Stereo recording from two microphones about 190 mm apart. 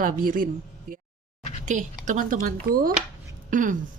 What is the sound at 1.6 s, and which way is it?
Speech, 40° right (ahead or behind).